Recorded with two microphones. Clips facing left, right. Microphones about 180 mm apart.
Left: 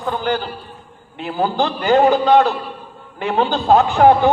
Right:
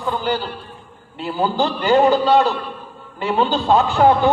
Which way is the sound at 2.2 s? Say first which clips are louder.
Left 2 dB; 55° left (ahead or behind).